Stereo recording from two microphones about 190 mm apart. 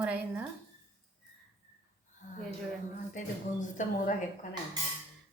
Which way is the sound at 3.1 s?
40° left (ahead or behind).